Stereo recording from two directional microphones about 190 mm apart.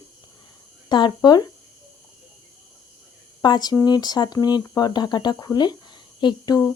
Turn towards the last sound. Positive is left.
turn(degrees=15)  # may be behind; listen again after turning